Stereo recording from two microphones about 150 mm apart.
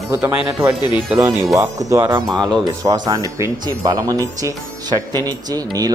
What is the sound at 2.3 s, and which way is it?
Speech, 5° left (ahead or behind).